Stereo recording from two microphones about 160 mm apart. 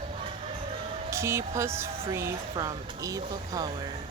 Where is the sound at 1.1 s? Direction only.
15° right (ahead or behind).